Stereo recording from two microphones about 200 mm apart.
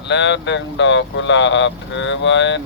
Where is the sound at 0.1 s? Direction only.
65° left (ahead or behind).